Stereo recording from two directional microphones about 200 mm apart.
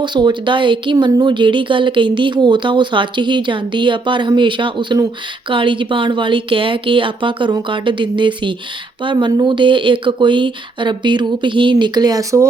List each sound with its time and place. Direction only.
0.0 s speech: 20° right (ahead or behind)